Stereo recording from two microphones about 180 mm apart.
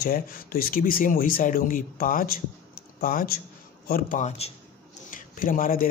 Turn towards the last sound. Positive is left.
turn(degrees=50)  # may be behind; listen again after turning